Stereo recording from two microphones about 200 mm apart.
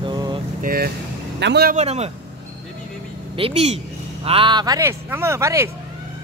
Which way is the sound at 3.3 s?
30° right (ahead or behind).